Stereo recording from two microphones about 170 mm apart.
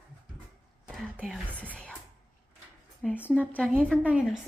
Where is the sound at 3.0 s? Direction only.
10° left (ahead or behind).